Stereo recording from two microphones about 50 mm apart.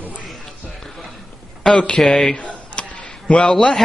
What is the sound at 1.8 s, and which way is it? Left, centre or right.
Speech, centre.